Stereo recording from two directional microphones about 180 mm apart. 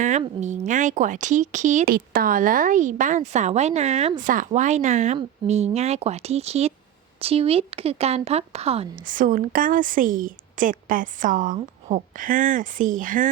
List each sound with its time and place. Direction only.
0.0 s a woman's voice: 40° right (ahead or behind)
9.0 s a woman's voice: 50° right (ahead or behind)